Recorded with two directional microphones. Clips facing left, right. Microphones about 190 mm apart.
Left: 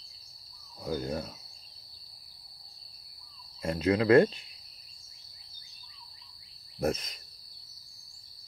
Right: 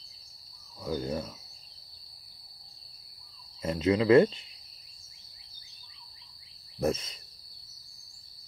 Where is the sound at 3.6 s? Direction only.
25° right (ahead or behind).